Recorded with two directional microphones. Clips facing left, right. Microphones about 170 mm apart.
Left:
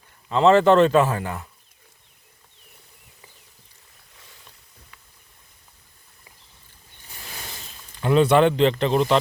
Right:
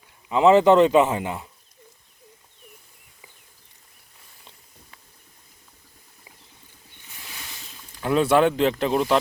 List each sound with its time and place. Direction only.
0.3 s a man's voice: 15° right (ahead or behind)
8.0 s speech: 5° right (ahead or behind)